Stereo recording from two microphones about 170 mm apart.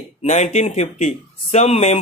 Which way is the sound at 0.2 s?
40° left (ahead or behind).